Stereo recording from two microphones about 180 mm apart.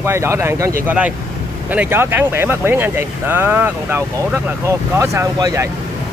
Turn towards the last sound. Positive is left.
turn(degrees=-20)  # may be behind; listen again after turning